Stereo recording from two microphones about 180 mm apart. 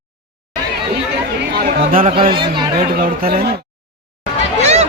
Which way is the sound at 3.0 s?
55° right (ahead or behind).